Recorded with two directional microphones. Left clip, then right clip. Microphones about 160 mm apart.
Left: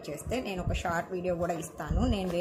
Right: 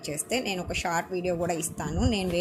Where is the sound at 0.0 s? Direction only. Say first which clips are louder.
Right 5 dB; 15° right (ahead or behind).